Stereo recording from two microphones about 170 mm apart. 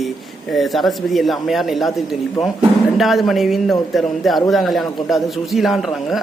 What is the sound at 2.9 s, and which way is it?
A man's voice, centre (ahead or behind).